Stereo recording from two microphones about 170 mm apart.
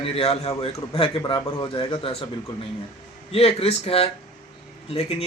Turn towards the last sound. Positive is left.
turn(degrees=35)  # may be behind; listen again after turning